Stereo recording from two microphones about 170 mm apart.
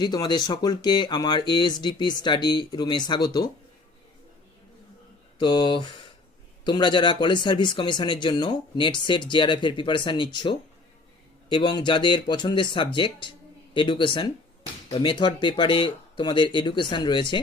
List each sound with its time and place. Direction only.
0.0 s speech: 25° left (ahead or behind)
5.4 s speech: 25° left (ahead or behind)